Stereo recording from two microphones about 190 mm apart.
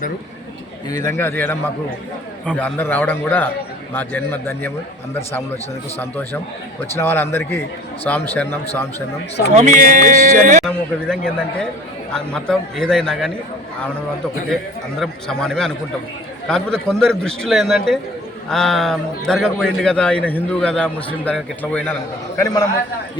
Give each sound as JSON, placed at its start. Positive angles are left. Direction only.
{"t": 0.9, "sound": "a man's voice", "side_deg": 20}
{"t": 6.9, "sound": "a man's voice", "side_deg": 10}
{"t": 9.6, "sound": "music", "side_deg": -40}
{"t": 10.7, "sound": "a man's voice", "side_deg": 5}
{"t": 14.5, "sound": "a man's voice", "side_deg": 0}
{"t": 22.4, "sound": "a man's voice", "side_deg": 20}